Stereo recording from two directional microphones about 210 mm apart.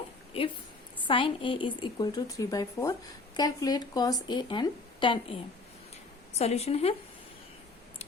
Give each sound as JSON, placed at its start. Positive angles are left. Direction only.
{"t": 0.3, "sound": "a woman's voice", "side_deg": 25}
{"t": 6.4, "sound": "a woman's voice", "side_deg": 30}